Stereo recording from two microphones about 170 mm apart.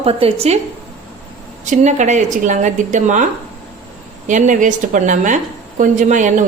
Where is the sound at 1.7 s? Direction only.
45° right (ahead or behind).